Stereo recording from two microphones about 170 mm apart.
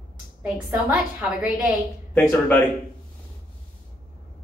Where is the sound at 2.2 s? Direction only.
10° left (ahead or behind).